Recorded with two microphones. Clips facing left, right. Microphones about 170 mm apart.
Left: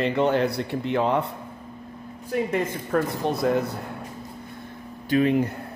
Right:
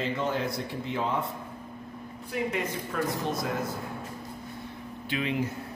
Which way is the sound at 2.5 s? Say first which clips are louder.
Left 7 dB; 60° left (ahead or behind).